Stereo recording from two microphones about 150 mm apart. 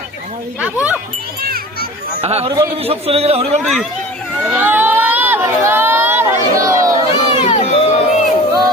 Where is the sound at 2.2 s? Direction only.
40° right (ahead or behind).